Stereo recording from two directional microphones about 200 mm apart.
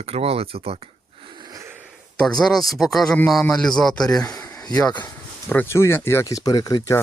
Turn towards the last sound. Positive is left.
turn(degrees=20)  # may be behind; listen again after turning